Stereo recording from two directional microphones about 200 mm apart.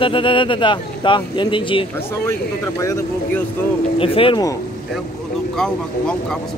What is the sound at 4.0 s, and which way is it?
Speech, 25° left (ahead or behind).